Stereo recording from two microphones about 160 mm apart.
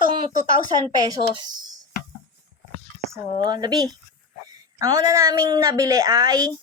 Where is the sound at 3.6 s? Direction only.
25° right (ahead or behind).